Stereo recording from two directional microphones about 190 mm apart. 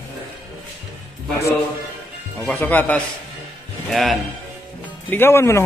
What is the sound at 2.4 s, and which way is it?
A man's voice, 10° left (ahead or behind).